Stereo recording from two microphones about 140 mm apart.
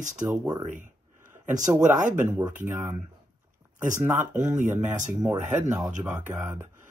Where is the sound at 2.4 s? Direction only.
15° right (ahead or behind).